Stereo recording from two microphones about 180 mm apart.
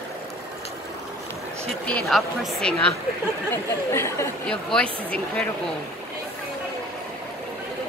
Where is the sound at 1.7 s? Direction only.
5° left (ahead or behind).